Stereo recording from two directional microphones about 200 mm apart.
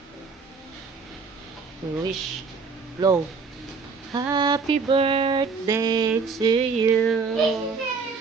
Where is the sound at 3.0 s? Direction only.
20° right (ahead or behind).